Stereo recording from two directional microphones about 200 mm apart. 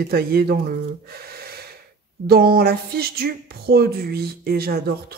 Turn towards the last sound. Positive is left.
turn(degrees=-50)  # may be behind; listen again after turning